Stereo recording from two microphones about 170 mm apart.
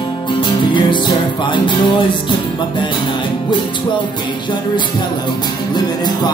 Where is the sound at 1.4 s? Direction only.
30° left (ahead or behind).